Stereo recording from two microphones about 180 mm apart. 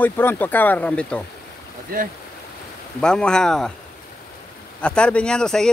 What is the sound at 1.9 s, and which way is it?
Speech, 50° right (ahead or behind).